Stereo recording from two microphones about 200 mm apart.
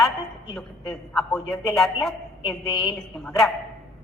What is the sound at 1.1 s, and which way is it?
A man's voice, centre (ahead or behind).